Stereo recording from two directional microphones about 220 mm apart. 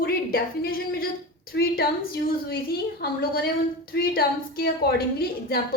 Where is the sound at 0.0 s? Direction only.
40° left (ahead or behind).